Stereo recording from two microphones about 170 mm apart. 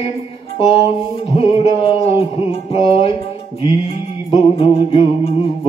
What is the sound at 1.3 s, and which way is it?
Music, 35° left (ahead or behind).